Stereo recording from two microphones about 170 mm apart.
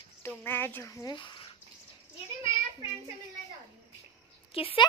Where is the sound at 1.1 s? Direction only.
30° left (ahead or behind).